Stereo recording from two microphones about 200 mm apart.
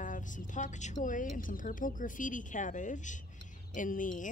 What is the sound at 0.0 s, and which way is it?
A woman's voice, 40° left (ahead or behind).